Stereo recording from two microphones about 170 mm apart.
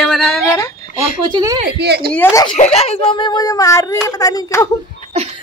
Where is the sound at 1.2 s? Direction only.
25° right (ahead or behind).